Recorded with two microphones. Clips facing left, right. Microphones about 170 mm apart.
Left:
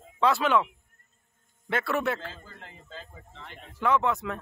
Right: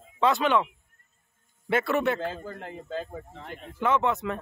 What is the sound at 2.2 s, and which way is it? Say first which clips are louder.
Speech: right 10 dB; 50° right (ahead or behind).